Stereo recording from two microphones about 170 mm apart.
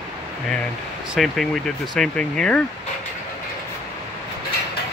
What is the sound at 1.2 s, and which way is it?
Speech, centre (ahead or behind).